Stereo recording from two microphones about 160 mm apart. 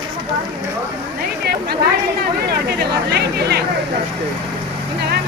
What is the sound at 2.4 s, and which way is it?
Speech, 90° right.